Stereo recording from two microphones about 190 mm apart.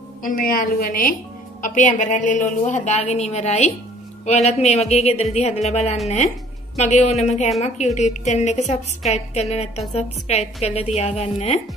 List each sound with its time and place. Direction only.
0.2 s a woman's voice: 45° left (ahead or behind)